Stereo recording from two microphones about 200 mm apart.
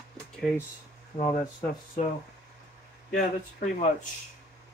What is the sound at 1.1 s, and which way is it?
Speech, 30° left (ahead or behind).